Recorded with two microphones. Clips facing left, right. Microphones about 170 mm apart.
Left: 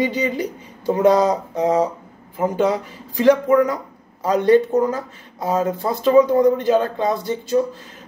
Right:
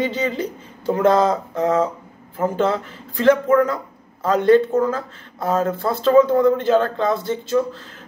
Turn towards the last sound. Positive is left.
turn(degrees=15)  # may be behind; listen again after turning